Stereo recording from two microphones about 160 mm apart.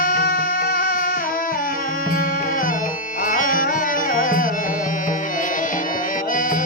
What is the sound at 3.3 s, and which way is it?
Tabla, 60° left (ahead or behind).